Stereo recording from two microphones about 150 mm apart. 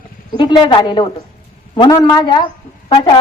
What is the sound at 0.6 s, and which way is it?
A woman's voice, 30° left (ahead or behind).